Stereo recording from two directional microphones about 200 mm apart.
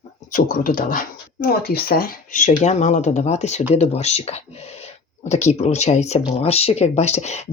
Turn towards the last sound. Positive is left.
turn(degrees=35)  # may be behind; listen again after turning